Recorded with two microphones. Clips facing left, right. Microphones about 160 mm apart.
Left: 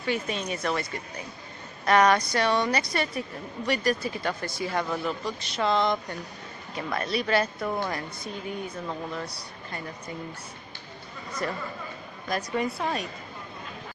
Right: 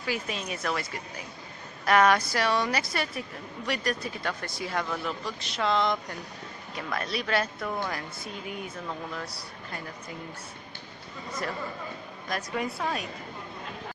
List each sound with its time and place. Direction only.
0.0 s speech: 5° right (ahead or behind)
12.3 s speech: centre (ahead or behind)